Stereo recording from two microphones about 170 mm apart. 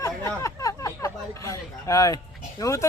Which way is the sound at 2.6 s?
20° left (ahead or behind).